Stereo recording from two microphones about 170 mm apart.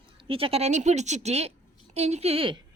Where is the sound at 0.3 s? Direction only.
35° right (ahead or behind).